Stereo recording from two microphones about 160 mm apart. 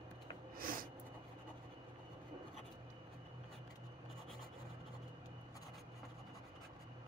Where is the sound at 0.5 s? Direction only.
60° right (ahead or behind).